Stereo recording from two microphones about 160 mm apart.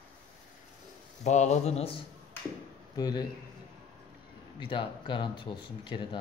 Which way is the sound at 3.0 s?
25° left (ahead or behind).